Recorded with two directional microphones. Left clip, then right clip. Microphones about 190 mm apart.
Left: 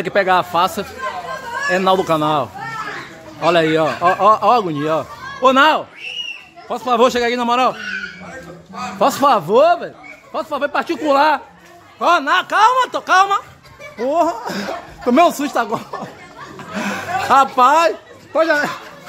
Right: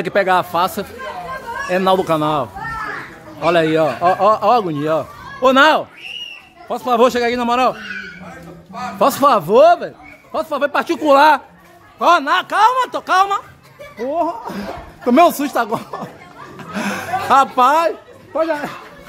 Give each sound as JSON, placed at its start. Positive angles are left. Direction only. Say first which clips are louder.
{"t": 0.0, "sound": "a man's voice", "louder": "even", "side_deg": -5}
{"t": 9.0, "sound": "a man's voice", "louder": "right 1 dB", "side_deg": -10}
{"t": 13.9, "sound": "speech", "louder": "left 3 dB", "side_deg": 20}
{"t": 15.0, "sound": "a man's voice", "louder": "right 1 dB", "side_deg": -10}
{"t": 16.5, "sound": "chuckle", "louder": "even", "side_deg": -5}
{"t": 17.8, "sound": "a man's voice", "louder": "left 2 dB", "side_deg": 20}